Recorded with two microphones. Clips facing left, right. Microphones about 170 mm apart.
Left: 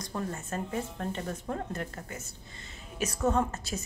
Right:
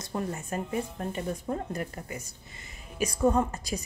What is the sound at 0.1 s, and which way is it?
Speech, 15° right (ahead or behind).